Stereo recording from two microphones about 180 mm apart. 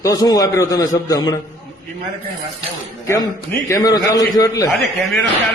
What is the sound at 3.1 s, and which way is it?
A man's voice, 15° left (ahead or behind).